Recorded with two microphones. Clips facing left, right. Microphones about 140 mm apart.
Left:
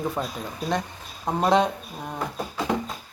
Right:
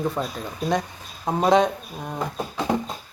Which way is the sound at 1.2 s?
5° right (ahead or behind).